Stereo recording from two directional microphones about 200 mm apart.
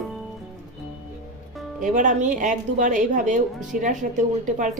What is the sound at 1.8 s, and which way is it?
A woman's voice, 40° right (ahead or behind).